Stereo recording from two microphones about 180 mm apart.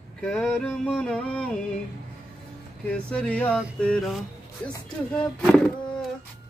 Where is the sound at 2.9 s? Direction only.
5° left (ahead or behind).